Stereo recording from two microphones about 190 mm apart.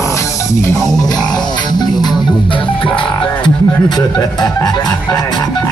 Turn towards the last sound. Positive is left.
turn(degrees=20)  # may be behind; listen again after turning